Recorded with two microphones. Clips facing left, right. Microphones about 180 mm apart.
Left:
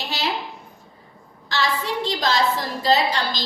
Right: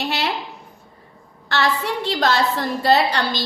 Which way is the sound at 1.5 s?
60° right (ahead or behind).